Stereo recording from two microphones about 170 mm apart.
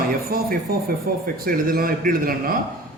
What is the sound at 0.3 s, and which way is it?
Speech, 65° right (ahead or behind).